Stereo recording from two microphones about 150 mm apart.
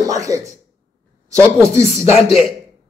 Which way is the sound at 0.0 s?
25° right (ahead or behind).